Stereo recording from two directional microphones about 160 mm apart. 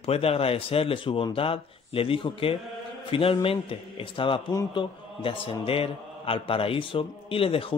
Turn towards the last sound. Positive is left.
turn(degrees=35)  # may be behind; listen again after turning